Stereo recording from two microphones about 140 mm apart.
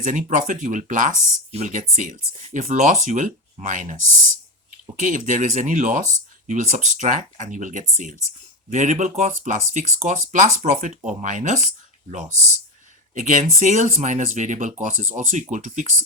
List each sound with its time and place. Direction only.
0.0 s speech: 65° right (ahead or behind)
4.9 s speech: 65° right (ahead or behind)
13.1 s speech: 65° right (ahead or behind)